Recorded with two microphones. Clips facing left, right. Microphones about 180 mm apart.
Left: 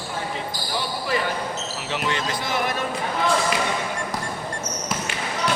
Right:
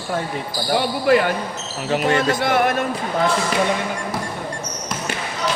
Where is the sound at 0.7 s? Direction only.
60° right (ahead or behind).